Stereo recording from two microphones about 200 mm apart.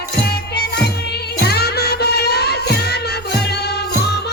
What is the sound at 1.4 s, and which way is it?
Music, 55° left (ahead or behind).